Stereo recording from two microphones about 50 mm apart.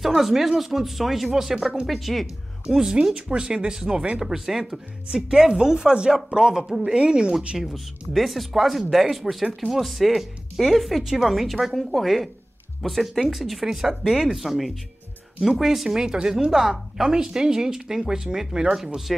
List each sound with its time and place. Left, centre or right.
0.0 s speech: centre
2.6 s speech: centre
4.2 s speech: centre
7.5 s speech: centre